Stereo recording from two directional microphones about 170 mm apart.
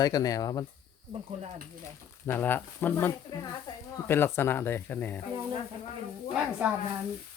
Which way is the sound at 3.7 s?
20° left (ahead or behind).